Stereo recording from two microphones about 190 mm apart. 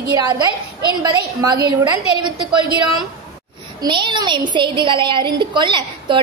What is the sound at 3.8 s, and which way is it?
A woman's voice, 25° right (ahead or behind).